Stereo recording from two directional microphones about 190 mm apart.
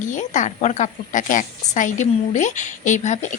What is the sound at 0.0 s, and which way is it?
Speech, 40° left (ahead or behind).